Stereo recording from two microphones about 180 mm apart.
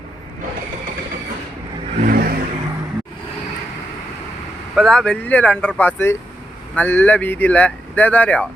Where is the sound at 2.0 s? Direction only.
55° right (ahead or behind).